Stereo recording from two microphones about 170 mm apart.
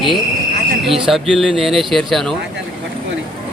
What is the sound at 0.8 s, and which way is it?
Speech, centre (ahead or behind).